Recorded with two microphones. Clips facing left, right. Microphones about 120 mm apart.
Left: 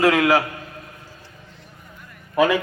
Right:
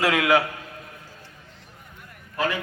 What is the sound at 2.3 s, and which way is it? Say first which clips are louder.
Speech: left 9 dB; 75° left (ahead or behind).